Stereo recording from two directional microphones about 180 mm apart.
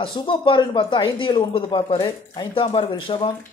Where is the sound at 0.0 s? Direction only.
25° left (ahead or behind).